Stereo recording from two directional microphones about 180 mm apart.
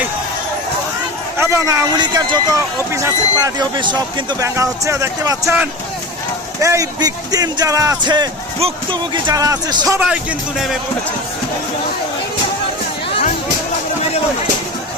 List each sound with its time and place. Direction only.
1.4 s speech: 15° right (ahead or behind)
6.6 s speech: 15° right (ahead or behind)